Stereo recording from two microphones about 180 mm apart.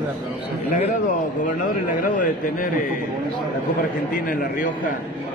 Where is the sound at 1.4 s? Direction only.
45° left (ahead or behind).